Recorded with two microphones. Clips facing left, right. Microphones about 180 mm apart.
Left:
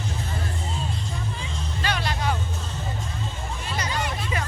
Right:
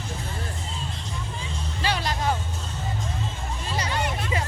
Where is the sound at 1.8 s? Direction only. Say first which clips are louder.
Right 1 dB; 30° right (ahead or behind).